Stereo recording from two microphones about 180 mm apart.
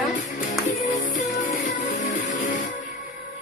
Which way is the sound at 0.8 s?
45° left (ahead or behind).